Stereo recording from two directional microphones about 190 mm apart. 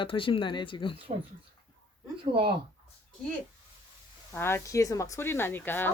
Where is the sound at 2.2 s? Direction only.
25° right (ahead or behind).